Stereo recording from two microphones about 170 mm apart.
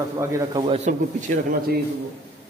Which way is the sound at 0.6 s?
35° right (ahead or behind).